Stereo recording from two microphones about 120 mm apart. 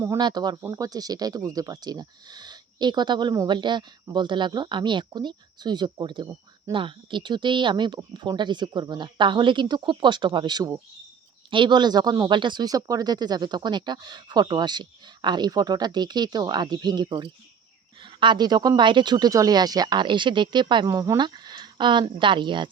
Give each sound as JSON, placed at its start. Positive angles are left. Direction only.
{"t": 0.2, "sound": "speech", "side_deg": -35}